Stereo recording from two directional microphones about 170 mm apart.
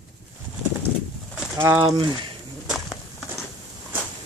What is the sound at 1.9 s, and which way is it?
Speech, 25° right (ahead or behind).